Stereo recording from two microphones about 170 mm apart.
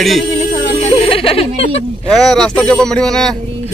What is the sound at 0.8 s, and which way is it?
Music, 35° left (ahead or behind).